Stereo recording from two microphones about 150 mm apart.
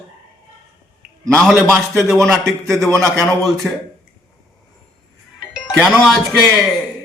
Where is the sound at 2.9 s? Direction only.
20° right (ahead or behind).